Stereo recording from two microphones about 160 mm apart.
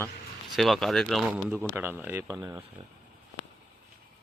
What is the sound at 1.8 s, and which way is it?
Speech, 15° right (ahead or behind).